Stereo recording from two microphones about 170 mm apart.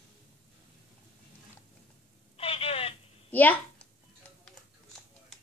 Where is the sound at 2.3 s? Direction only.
35° left (ahead or behind).